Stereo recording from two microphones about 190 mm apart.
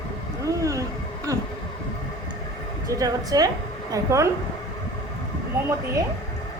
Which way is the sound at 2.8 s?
20° right (ahead or behind).